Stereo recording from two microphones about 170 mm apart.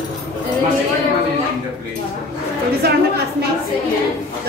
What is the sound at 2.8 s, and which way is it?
Speech, 70° right (ahead or behind).